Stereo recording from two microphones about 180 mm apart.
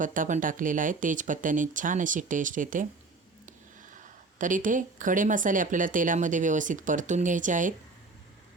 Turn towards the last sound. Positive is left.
turn(degrees=-45)  # may be behind; listen again after turning